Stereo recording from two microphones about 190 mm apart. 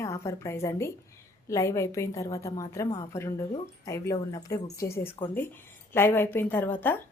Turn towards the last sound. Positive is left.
turn(degrees=10)  # may be behind; listen again after turning